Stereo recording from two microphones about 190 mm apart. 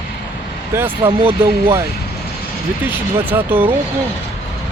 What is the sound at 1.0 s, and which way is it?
Speech, 25° right (ahead or behind).